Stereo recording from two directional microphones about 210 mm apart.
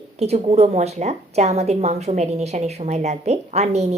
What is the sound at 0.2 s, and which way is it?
A woman's voice, 30° right (ahead or behind).